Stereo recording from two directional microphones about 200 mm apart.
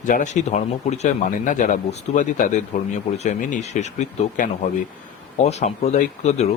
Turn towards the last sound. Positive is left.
turn(degrees=35)  # may be behind; listen again after turning